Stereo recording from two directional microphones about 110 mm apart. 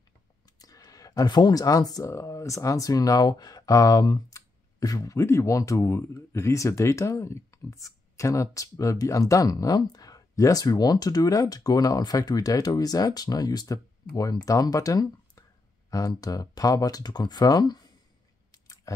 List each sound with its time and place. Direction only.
0.6 s speech: 35° left (ahead or behind)
18.5 s clicking: 30° left (ahead or behind)